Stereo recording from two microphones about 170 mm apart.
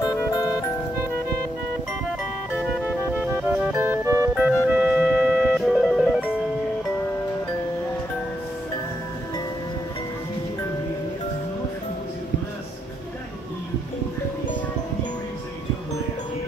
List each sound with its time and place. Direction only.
0.2 s music: 15° left (ahead or behind)
2.5 s music: 5° right (ahead or behind)